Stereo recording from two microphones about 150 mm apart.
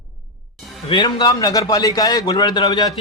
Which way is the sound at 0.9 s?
30° left (ahead or behind).